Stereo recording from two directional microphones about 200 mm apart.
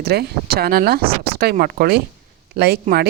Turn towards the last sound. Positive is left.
turn(degrees=-50)  # may be behind; listen again after turning